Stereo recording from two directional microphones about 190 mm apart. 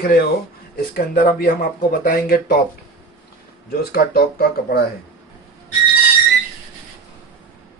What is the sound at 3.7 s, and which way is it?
Speech, 50° left (ahead or behind).